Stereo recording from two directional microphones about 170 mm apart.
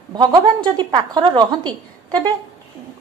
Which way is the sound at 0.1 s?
25° right (ahead or behind).